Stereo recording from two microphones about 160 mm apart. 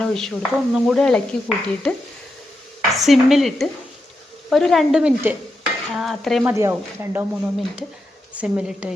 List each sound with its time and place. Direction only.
0.0 s speech: 5° left (ahead or behind)
2.9 s speech: centre (ahead or behind)
6.4 s speech: 15° right (ahead or behind)